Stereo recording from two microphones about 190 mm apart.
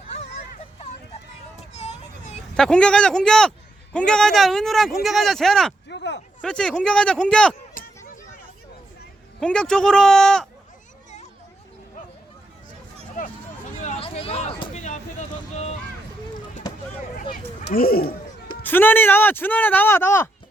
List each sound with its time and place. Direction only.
1.5 s vehicle: 35° left (ahead or behind)
2.6 s speech: 5° left (ahead or behind)
5.9 s a sound: 65° left (ahead or behind)
6.4 s speech: 5° left (ahead or behind)
7.7 s a sound: 45° left (ahead or behind)
9.4 s speech: 5° left (ahead or behind)
13.8 s a sound: 30° left (ahead or behind)
14.7 s vehicle: 40° left (ahead or behind)
17.7 s speech: 50° left (ahead or behind)
18.6 s speech: 10° left (ahead or behind)